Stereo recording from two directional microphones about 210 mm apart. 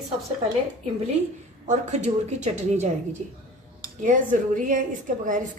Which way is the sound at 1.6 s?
35° right (ahead or behind).